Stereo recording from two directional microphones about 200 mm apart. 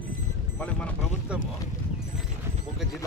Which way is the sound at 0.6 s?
5° left (ahead or behind).